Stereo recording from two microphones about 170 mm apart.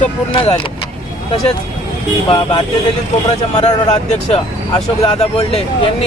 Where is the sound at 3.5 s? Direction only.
40° left (ahead or behind).